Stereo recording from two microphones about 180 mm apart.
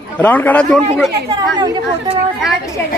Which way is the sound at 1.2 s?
20° right (ahead or behind).